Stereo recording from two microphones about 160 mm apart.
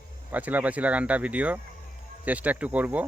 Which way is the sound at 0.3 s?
10° right (ahead or behind).